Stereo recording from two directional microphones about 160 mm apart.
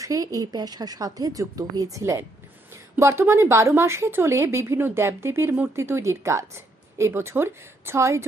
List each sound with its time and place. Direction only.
0.0 s speech: 20° right (ahead or behind)